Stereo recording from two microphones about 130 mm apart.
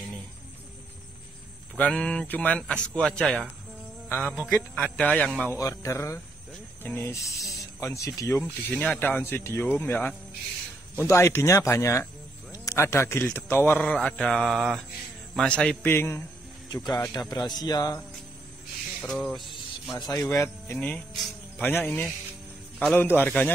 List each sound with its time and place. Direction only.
1.8 s speech: 10° left (ahead or behind)
4.1 s mantra: 5° left (ahead or behind)
4.5 s speech: 10° left (ahead or behind)
5.6 s speech: 25° left (ahead or behind)
13.9 s mantra: 10° left (ahead or behind)
15.3 s speech: 5° left (ahead or behind)
15.9 s speech: 20° left (ahead or behind)
16.7 s a man's voice: 30° left (ahead or behind)
18.9 s music: 5° left (ahead or behind)
20.0 s speech: 25° left (ahead or behind)